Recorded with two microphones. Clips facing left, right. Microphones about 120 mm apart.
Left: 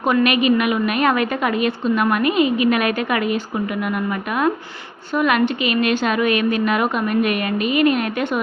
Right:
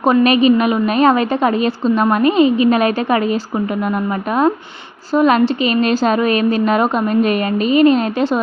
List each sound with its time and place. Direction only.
0.0 s a woman's voice: 35° right (ahead or behind)
5.1 s a woman's voice: 30° right (ahead or behind)